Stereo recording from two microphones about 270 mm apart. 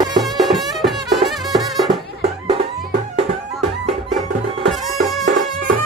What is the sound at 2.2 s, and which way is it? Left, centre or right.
Music, right.